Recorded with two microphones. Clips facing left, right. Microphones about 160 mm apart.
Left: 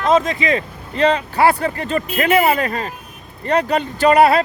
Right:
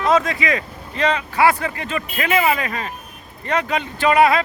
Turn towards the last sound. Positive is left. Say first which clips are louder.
# left 3 dB
turn(degrees=35)  # may be behind; listen again after turning